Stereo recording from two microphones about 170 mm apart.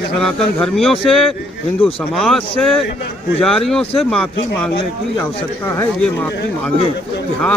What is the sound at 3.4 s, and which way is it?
A man's voice, centre (ahead or behind).